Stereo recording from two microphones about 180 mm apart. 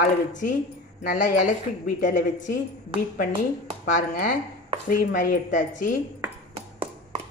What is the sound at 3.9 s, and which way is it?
Speech, 50° left (ahead or behind).